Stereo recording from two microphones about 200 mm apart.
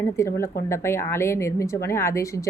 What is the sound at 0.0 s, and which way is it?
A woman's voice, 15° left (ahead or behind).